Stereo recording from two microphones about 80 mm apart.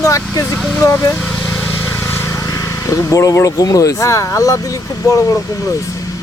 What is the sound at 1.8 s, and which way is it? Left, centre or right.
Vehicle, left.